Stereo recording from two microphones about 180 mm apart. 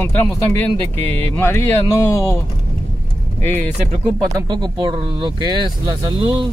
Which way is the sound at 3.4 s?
10° left (ahead or behind).